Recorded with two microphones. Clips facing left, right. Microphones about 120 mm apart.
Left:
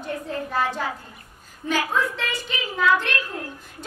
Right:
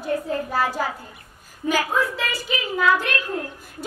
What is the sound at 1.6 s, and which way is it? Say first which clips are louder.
Speech: right 2 dB; 5° right (ahead or behind).